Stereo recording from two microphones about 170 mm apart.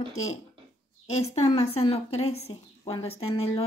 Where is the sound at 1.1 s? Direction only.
40° left (ahead or behind).